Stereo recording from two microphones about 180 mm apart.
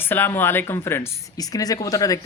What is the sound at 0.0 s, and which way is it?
Speech, 10° left (ahead or behind).